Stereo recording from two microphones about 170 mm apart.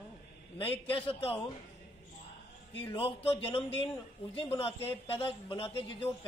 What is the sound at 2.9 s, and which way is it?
Speech, 35° left (ahead or behind).